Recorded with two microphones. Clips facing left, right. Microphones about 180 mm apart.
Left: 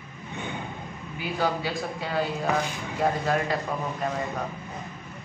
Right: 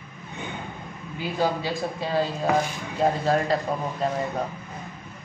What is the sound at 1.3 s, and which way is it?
A man's voice, 25° right (ahead or behind).